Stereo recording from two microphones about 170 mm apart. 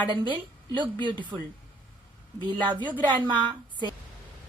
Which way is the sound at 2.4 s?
25° right (ahead or behind).